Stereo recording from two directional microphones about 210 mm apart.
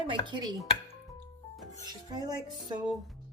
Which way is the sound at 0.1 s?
20° right (ahead or behind).